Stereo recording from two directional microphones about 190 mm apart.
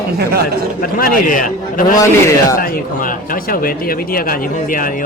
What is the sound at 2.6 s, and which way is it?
Speech, 50° left (ahead or behind).